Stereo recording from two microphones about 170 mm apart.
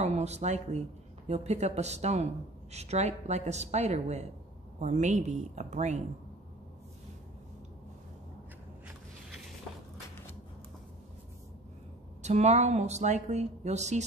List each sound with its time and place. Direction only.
0.0 s speech: 40° right (ahead or behind)
12.2 s speech: 40° right (ahead or behind)